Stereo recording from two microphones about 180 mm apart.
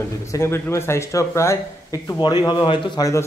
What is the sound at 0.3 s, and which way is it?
Speech, 15° left (ahead or behind).